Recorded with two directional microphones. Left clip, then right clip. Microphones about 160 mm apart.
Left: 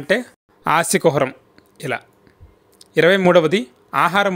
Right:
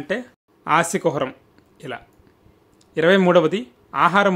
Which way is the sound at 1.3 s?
25° left (ahead or behind).